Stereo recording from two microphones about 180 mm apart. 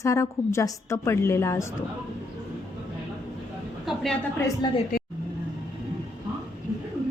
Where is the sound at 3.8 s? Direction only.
Centre (ahead or behind).